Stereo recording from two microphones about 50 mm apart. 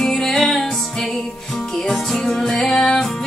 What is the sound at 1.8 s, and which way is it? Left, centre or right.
Music, centre.